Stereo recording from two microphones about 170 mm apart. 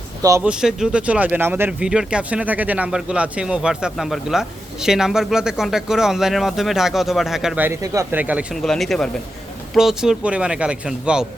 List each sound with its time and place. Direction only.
0.2 s speech: 20° right (ahead or behind)
0.4 s speech: 5° right (ahead or behind)